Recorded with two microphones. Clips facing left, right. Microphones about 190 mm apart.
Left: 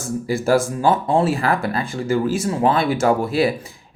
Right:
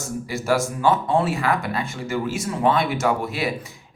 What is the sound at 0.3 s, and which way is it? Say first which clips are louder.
Speech: left 5 dB; 30° left (ahead or behind).